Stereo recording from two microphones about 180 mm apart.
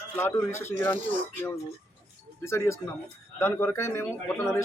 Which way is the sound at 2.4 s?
15° left (ahead or behind).